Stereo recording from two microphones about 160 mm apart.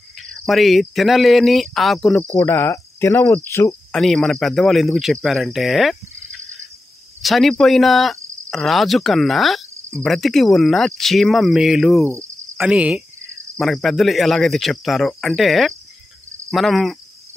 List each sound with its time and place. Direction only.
0.3 s speech: centre (ahead or behind); by 3.3 s 15° left (ahead or behind)
3.4 s cricket: 15° left (ahead or behind)
3.9 s speech: 5° left (ahead or behind)
7.2 s speech: centre (ahead or behind)
12.0 s cricket: 15° right (ahead or behind)
12.5 s cricket: 5° right (ahead or behind)
13.6 s speech: centre (ahead or behind)